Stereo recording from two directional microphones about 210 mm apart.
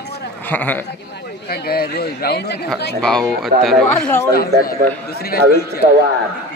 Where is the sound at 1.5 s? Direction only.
45° left (ahead or behind).